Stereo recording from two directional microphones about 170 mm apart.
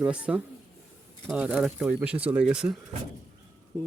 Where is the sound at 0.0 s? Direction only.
5° right (ahead or behind).